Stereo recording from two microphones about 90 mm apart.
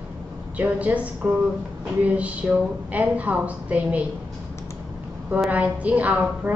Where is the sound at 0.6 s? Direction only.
15° right (ahead or behind).